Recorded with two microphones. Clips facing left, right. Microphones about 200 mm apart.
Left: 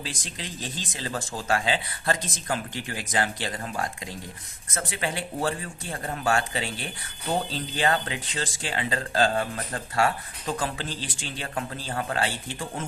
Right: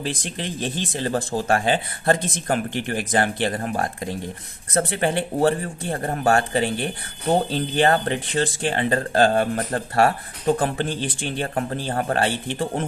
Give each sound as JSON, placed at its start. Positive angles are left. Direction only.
{"t": 0.0, "sound": "speech", "side_deg": -60}